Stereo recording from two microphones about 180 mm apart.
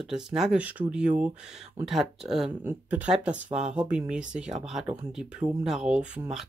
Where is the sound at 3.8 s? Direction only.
5° right (ahead or behind).